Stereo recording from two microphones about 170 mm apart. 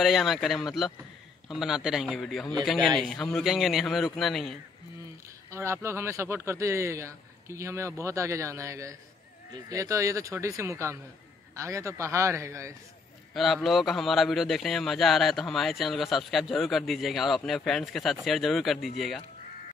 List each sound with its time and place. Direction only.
0.0 s a man's voice: centre (ahead or behind)
5.5 s a man's voice: 15° right (ahead or behind)
13.3 s a man's voice: centre (ahead or behind)